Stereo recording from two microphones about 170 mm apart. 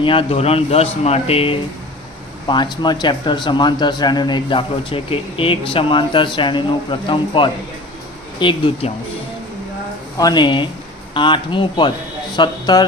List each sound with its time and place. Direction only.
0.0 s speech: 30° left (ahead or behind)
10.2 s speech: 25° left (ahead or behind)